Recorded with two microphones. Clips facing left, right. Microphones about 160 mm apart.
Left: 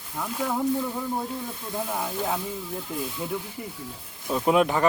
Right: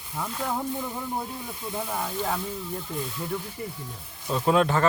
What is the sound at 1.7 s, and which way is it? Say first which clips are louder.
Speech: left 1 dB; 5° left (ahead or behind).